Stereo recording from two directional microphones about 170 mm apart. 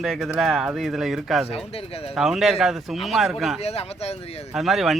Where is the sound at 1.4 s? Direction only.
35° left (ahead or behind).